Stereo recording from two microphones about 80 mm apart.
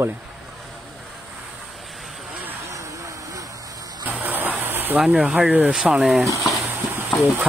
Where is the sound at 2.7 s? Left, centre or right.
Right.